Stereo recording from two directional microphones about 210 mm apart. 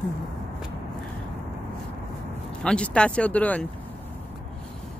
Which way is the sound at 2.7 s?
5° left (ahead or behind).